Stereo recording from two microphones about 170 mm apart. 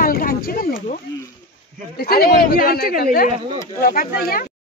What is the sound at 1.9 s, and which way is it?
Speech, 65° left (ahead or behind).